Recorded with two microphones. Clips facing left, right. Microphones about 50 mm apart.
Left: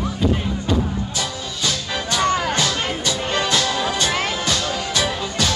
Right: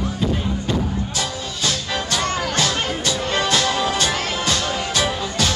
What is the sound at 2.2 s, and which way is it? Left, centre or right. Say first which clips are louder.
Music: left 5 dB; left.